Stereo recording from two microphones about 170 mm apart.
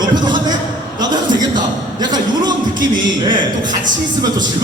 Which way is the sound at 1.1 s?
25° right (ahead or behind).